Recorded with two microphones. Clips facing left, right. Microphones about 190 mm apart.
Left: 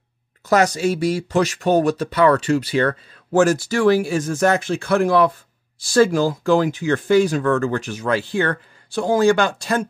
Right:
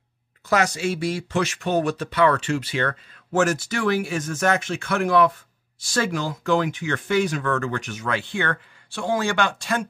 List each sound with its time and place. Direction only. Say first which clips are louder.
0.5 s speech: left 5 dB; 40° left (ahead or behind)